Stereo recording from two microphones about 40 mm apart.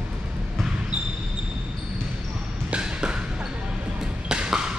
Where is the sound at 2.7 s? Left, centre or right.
Right.